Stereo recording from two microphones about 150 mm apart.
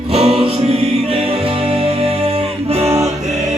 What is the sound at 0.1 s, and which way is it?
Music, 40° right (ahead or behind).